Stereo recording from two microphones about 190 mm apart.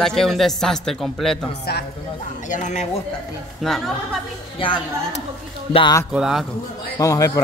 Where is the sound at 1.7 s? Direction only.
60° left (ahead or behind).